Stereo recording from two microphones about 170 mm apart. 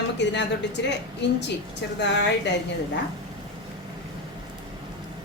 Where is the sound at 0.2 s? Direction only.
90° left.